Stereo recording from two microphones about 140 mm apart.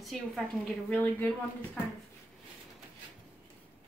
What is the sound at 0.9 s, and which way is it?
Speech, 10° left (ahead or behind).